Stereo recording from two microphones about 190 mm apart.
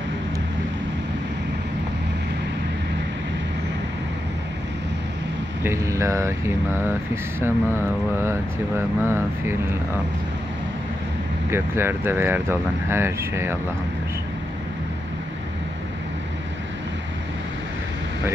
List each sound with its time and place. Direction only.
5.6 s speech: 15° right (ahead or behind)
11.5 s speech: 10° right (ahead or behind)